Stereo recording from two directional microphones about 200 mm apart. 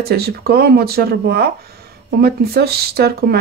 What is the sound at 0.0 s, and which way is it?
Speech, 50° right (ahead or behind).